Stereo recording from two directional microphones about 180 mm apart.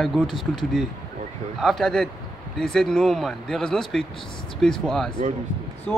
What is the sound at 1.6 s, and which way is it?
Speech, centre (ahead or behind).